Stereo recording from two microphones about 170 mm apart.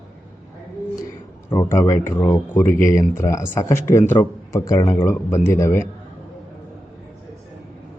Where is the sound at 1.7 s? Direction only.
15° left (ahead or behind).